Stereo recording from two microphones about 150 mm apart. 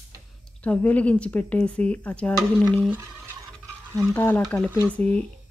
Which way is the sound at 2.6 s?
10° right (ahead or behind).